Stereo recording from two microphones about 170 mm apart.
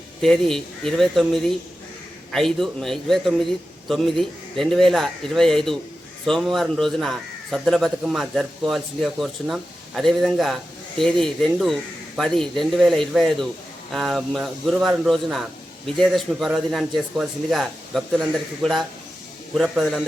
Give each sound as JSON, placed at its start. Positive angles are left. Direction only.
{"t": 0.2, "sound": "speech", "side_deg": 0}